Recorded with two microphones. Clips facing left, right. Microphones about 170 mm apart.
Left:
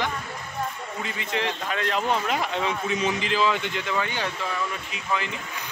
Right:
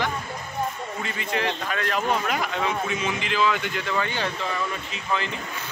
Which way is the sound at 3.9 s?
15° left (ahead or behind).